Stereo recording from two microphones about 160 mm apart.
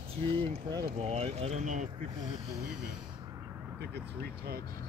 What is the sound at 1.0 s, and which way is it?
Speech, 40° right (ahead or behind).